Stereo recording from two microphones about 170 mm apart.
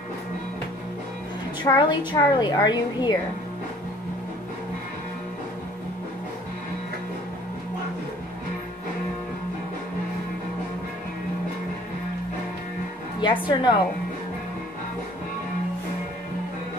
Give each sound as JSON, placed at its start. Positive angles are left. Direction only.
{"t": 1.6, "sound": "a woman's voice", "side_deg": 25}
{"t": 13.2, "sound": "a woman's voice", "side_deg": 25}